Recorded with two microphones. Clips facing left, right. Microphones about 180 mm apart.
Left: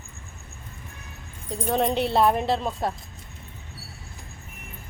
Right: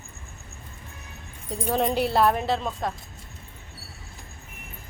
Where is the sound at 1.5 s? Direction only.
Centre (ahead or behind).